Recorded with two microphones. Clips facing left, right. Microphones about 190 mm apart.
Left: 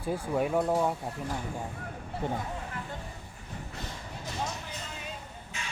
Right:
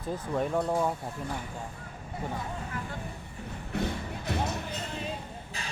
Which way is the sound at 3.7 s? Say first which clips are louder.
Right 13 dB; 60° right (ahead or behind).